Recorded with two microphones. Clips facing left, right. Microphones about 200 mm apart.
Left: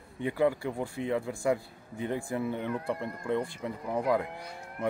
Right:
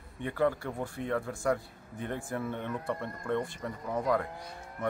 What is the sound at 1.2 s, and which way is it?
Speech, 15° left (ahead or behind).